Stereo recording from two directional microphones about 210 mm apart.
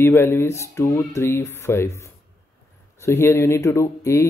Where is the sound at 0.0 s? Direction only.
10° left (ahead or behind).